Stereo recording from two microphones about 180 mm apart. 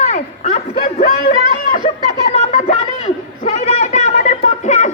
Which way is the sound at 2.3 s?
40° left (ahead or behind).